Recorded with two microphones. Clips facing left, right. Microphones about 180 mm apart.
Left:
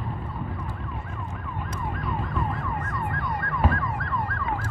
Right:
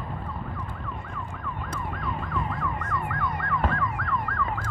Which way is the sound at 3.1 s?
35° left (ahead or behind).